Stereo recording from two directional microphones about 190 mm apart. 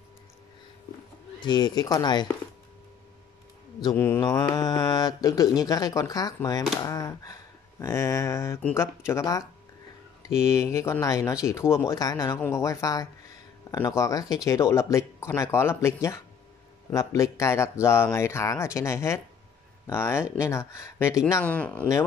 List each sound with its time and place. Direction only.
1.4 s speech: 20° left (ahead or behind)
3.8 s speech: 15° left (ahead or behind)